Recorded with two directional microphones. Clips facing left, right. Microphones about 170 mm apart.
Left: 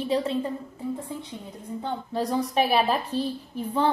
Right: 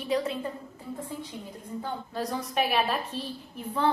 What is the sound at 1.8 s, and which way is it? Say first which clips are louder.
A woman's voice: left 5 dB; 30° left (ahead or behind).